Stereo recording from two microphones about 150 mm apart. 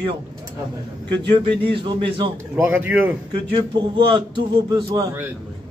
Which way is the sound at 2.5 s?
10° right (ahead or behind).